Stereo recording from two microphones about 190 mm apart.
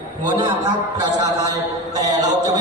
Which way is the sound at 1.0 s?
20° right (ahead or behind).